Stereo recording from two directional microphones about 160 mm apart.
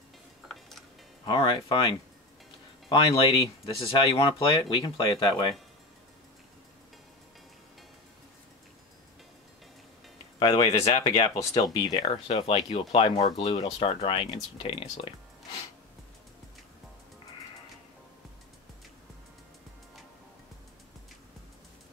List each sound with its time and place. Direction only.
1.2 s speech: 30° left (ahead or behind)
2.9 s speech: 35° left (ahead or behind)
10.4 s speech: 30° left (ahead or behind)
12.0 s speech: 40° left (ahead or behind)